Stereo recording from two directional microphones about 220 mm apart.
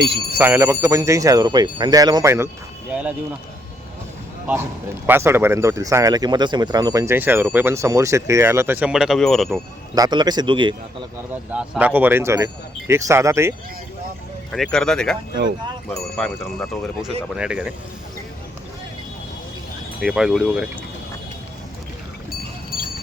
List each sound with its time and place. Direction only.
0.3 s speech: 10° right (ahead or behind)
5.0 s speech: 10° right (ahead or behind)
9.5 s speech: 15° right (ahead or behind)
11.5 s speech: 5° right (ahead or behind)
14.5 s speech: centre (ahead or behind)
20.0 s speech: centre (ahead or behind)